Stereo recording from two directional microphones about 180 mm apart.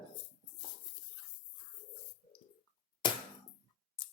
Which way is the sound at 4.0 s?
25° left (ahead or behind).